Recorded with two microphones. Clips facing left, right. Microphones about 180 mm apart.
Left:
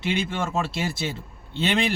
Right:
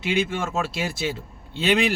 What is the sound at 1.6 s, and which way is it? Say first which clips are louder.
Speech: right 3 dB; 5° right (ahead or behind).